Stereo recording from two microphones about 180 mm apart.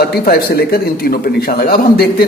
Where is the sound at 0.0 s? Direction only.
60° left (ahead or behind).